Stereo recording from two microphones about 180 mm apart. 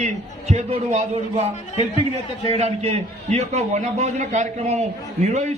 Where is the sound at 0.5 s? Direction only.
35° right (ahead or behind).